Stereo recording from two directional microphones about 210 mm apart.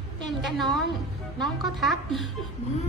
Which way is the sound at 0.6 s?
Centre (ahead or behind).